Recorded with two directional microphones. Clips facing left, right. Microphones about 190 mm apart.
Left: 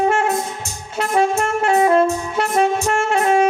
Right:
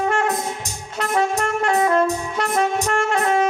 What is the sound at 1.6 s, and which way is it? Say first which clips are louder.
Music: left 4 dB; 15° left (ahead or behind).